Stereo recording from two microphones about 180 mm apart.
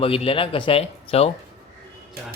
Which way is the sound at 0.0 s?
30° left (ahead or behind).